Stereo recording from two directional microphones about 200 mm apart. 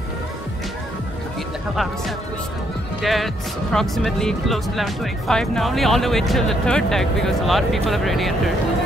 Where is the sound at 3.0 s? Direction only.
Centre (ahead or behind).